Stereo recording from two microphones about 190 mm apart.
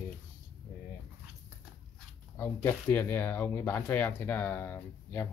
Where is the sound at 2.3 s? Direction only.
15° left (ahead or behind).